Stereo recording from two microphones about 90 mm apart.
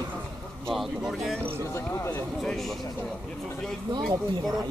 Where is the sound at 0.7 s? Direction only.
5° right (ahead or behind).